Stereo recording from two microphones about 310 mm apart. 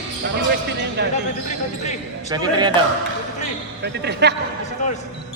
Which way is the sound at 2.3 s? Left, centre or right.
Centre.